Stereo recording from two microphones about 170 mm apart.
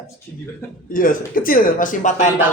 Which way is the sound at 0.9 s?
55° left (ahead or behind).